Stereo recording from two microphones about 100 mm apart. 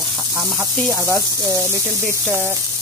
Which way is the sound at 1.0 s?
25° right (ahead or behind).